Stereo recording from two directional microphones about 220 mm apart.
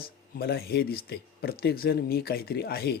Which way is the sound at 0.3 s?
45° left (ahead or behind).